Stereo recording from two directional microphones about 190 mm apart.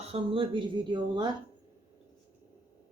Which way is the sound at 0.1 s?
25° right (ahead or behind).